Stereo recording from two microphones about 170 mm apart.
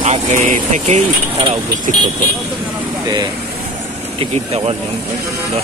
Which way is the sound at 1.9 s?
45° right (ahead or behind).